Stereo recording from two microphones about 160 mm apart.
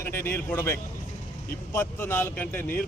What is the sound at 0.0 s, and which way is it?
Speech, 15° left (ahead or behind).